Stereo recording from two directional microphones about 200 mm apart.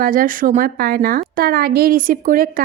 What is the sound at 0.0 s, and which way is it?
A woman's voice, 45° right (ahead or behind).